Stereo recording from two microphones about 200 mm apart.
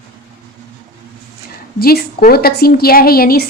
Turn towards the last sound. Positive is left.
turn(degrees=50)  # may be behind; listen again after turning